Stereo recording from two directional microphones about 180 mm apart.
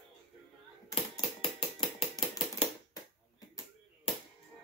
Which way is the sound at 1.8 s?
30° left (ahead or behind).